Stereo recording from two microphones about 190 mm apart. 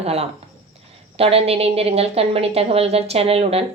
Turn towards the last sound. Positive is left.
turn(degrees=-30)  # may be behind; listen again after turning